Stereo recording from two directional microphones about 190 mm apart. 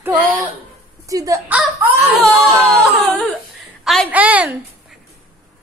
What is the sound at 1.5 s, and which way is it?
Whimper, 10° right (ahead or behind).